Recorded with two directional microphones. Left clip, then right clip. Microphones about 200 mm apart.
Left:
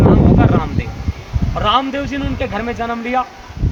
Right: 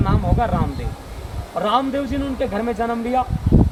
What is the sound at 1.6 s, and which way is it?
Speech, 10° right (ahead or behind).